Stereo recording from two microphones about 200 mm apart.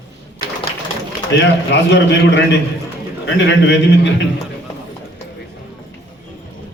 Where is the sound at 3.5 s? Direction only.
60° left (ahead or behind).